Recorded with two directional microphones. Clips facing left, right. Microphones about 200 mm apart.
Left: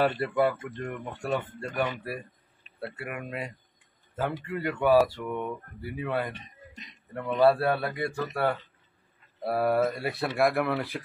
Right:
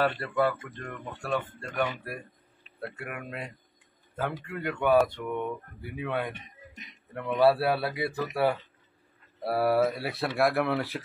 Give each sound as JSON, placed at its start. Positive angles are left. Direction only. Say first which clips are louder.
{"t": 0.0, "sound": "speech", "louder": "left 2 dB", "side_deg": 15}
{"t": 1.3, "sound": "speech", "louder": "even", "side_deg": 5}